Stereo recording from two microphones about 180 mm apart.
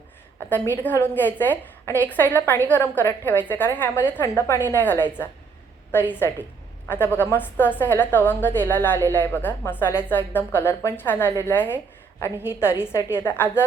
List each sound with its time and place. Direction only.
0.3 s a woman's voice: 10° left (ahead or behind)